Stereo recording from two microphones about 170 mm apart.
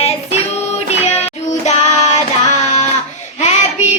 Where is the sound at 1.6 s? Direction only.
45° left (ahead or behind).